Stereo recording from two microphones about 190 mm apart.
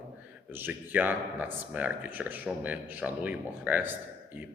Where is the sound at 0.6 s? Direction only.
10° right (ahead or behind).